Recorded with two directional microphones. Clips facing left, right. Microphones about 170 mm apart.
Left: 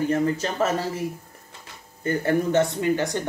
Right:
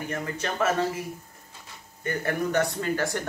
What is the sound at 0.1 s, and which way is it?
Speech, 30° left (ahead or behind).